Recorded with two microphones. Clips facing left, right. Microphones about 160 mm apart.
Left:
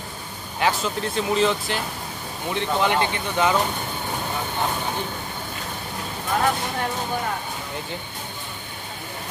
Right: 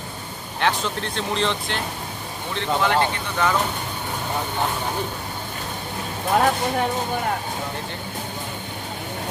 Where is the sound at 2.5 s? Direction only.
15° left (ahead or behind).